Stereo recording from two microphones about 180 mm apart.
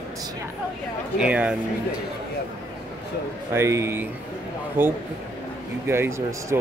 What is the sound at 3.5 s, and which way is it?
Speech, 15° right (ahead or behind).